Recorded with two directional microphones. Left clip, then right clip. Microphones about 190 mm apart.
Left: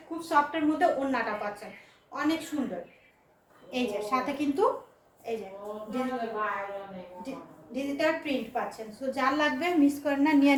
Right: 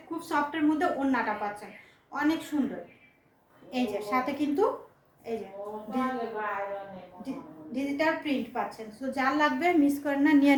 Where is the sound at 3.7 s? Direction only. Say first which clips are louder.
Even; 15° right (ahead or behind).